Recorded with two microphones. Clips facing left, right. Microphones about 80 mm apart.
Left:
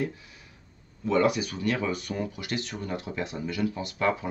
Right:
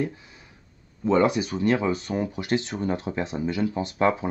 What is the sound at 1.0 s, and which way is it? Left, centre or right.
Speech, right.